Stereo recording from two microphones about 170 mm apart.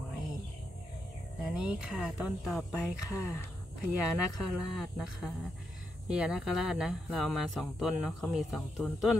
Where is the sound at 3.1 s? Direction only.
15° left (ahead or behind).